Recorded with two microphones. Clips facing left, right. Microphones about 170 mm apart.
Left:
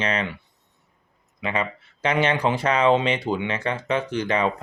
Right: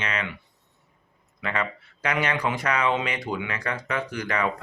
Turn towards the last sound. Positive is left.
turn(degrees=25)  # may be behind; listen again after turning